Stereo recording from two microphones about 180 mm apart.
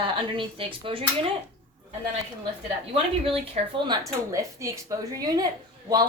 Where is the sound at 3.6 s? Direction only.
40° right (ahead or behind).